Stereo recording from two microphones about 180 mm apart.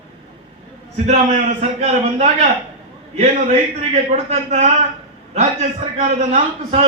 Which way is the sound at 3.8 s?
35° right (ahead or behind).